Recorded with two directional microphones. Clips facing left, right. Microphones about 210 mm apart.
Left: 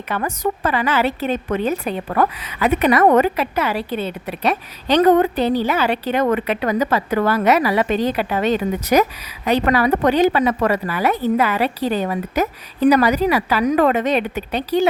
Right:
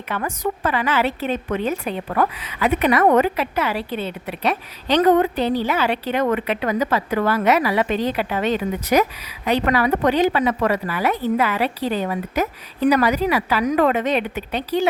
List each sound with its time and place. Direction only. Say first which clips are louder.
0.1 s a woman's voice: left 2 dB; 40° left (ahead or behind)